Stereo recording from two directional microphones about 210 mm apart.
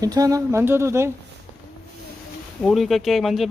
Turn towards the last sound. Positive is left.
turn(degrees=0)  # may be behind; listen again after turning